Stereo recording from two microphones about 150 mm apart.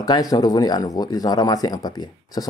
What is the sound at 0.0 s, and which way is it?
Speech, 25° left (ahead or behind).